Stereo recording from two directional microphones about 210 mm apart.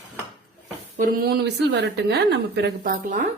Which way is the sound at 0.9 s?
45° right (ahead or behind).